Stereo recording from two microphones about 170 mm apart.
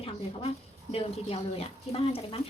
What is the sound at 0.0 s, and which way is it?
Speech, 35° left (ahead or behind).